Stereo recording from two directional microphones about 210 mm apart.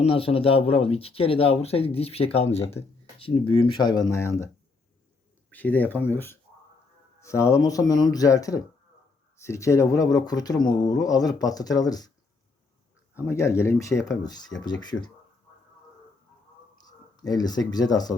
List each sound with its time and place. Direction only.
0.0 s speech: 30° left (ahead or behind); by 4.4 s 10° left (ahead or behind)
5.5 s speech: 10° left (ahead or behind)
13.1 s speech: 15° left (ahead or behind)
17.2 s speech: 20° left (ahead or behind)